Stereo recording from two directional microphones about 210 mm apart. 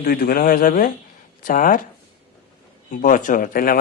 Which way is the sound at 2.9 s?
40° left (ahead or behind).